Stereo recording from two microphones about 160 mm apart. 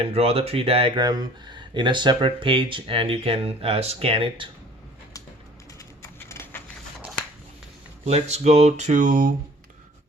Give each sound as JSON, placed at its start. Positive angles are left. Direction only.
{"t": 0.0, "sound": "speech", "side_deg": -40}
{"t": 6.0, "sound": "a sound", "side_deg": 15}
{"t": 8.0, "sound": "speech", "side_deg": -45}